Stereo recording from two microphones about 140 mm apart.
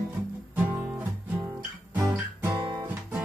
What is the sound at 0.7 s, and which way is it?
Music, 15° right (ahead or behind).